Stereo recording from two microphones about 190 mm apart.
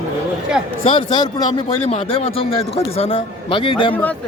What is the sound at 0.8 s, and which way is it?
Speech, 25° left (ahead or behind).